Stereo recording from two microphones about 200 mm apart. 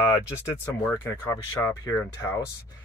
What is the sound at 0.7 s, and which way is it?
Speech, 15° left (ahead or behind).